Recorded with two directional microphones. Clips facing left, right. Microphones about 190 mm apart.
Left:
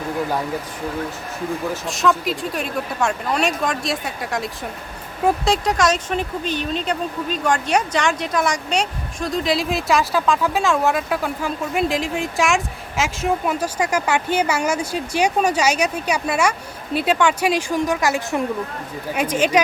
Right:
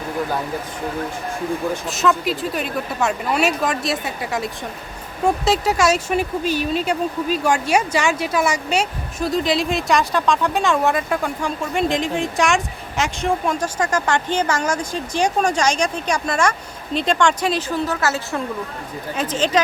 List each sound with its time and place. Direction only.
1.7 s speech: centre (ahead or behind)